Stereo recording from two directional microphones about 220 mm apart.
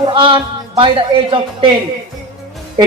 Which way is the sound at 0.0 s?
25° right (ahead or behind).